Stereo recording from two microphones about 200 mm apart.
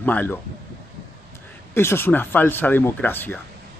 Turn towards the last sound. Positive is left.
turn(degrees=10)  # may be behind; listen again after turning